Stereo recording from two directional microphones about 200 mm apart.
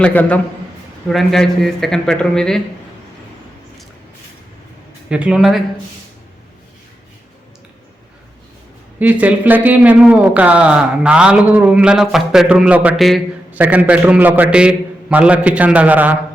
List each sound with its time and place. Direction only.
0.0 s a man's voice: 5° left (ahead or behind)
5.0 s a man's voice: 5° right (ahead or behind)
9.0 s a man's voice: 10° right (ahead or behind)